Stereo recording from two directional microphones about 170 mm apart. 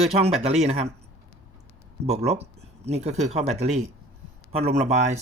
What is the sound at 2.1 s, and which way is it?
Speech, 40° right (ahead or behind).